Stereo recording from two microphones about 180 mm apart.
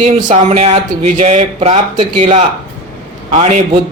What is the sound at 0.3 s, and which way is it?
A man's voice, 40° right (ahead or behind).